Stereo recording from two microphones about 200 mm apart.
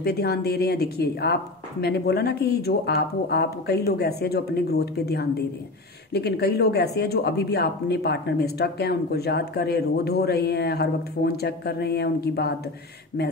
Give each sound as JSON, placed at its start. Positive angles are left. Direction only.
{"t": 0.0, "sound": "speech", "side_deg": 55}